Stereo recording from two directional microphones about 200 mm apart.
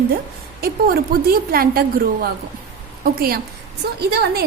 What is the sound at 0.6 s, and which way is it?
A woman's voice, 50° right (ahead or behind).